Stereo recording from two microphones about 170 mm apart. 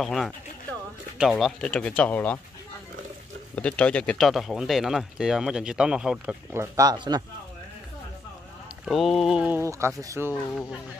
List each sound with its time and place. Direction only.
0.0 s speech: centre (ahead or behind)
3.5 s speech: 5° left (ahead or behind)
6.5 s speech: 15° right (ahead or behind)
8.8 s speech: centre (ahead or behind); by 10.3 s 15° right (ahead or behind)
10.3 s speech: 10° left (ahead or behind)